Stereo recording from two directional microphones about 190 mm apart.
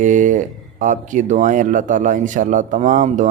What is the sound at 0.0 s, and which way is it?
Speech, 40° right (ahead or behind).